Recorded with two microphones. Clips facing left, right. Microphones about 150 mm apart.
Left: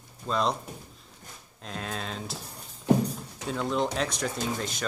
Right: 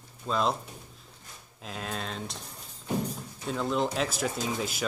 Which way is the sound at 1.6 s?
Centre (ahead or behind).